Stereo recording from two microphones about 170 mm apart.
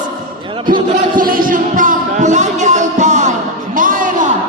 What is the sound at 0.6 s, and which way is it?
Music, 55° right (ahead or behind).